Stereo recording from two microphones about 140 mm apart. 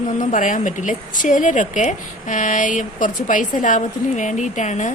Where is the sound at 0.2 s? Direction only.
65° left (ahead or behind).